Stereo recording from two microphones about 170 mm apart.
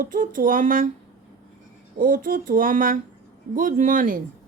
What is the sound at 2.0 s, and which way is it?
Speech, 55° right (ahead or behind).